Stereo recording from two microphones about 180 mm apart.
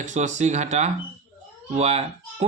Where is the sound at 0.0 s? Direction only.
40° right (ahead or behind).